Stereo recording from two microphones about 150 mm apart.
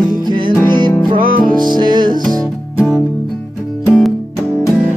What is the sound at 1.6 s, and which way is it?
Music, 30° right (ahead or behind).